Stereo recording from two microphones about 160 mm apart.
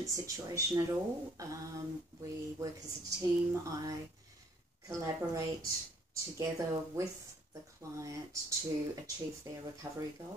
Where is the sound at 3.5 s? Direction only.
20° right (ahead or behind).